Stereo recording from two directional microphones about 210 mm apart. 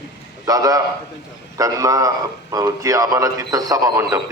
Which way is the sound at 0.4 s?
15° right (ahead or behind).